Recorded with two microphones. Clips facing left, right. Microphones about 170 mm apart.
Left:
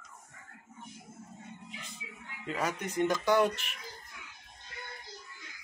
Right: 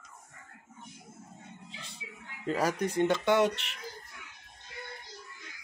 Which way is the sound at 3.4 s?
80° right.